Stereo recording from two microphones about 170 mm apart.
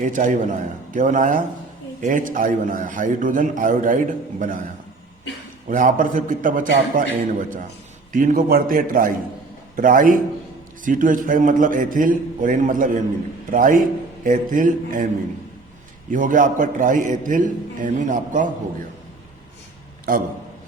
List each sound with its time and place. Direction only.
0.0 s a man's voice: 50° right (ahead or behind)
5.6 s a man's voice: 50° right (ahead or behind)
16.0 s a man's voice: 50° right (ahead or behind)
20.1 s a man's voice: 55° right (ahead or behind)